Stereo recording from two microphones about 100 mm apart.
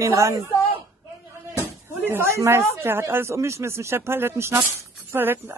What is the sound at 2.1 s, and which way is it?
Speech, 25° right (ahead or behind).